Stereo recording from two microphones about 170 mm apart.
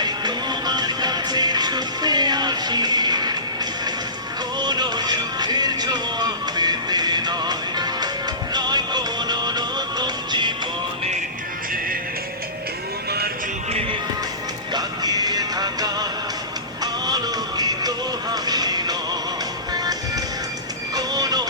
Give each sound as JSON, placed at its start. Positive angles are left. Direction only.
{"t": 0.0, "sound": "music", "side_deg": -25}
{"t": 13.1, "sound": "music", "side_deg": -70}
{"t": 14.7, "sound": "music", "side_deg": -25}